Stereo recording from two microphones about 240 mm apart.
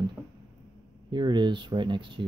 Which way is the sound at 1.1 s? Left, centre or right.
Centre.